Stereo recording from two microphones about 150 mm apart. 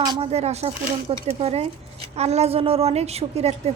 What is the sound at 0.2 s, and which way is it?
A woman's voice, 45° right (ahead or behind).